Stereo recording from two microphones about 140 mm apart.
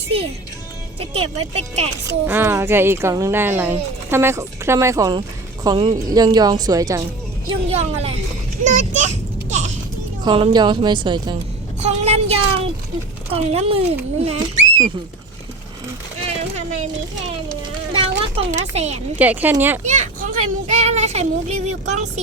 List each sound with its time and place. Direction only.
1.1 s speech: 45° right (ahead or behind)
2.0 s a woman's voice: 15° right (ahead or behind)
5.7 s speech: 40° right (ahead or behind)
6.1 s a woman's voice: 30° right (ahead or behind)
7.7 s speech: 50° right (ahead or behind)
8.6 s a sound: 60° right (ahead or behind)
10.2 s speech: 35° right (ahead or behind)
11.8 s speech: 50° right (ahead or behind)
16.4 s a sound: 55° right (ahead or behind)
17.9 s a sound: 45° right (ahead or behind)
18.5 s speech: 50° right (ahead or behind)
19.2 s speech: 10° right (ahead or behind)
19.9 s children playing: 65° right (ahead or behind)
21.7 s speech: 55° right (ahead or behind)